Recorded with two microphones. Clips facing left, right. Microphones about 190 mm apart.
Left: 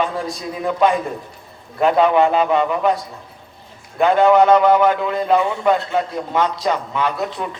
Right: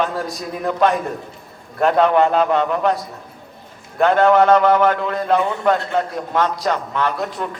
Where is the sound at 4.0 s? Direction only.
5° left (ahead or behind).